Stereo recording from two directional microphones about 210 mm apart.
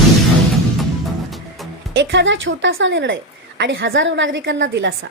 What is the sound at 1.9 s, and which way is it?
A woman's voice, 55° right (ahead or behind).